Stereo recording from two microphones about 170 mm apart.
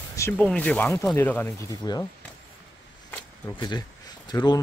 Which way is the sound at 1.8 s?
25° left (ahead or behind).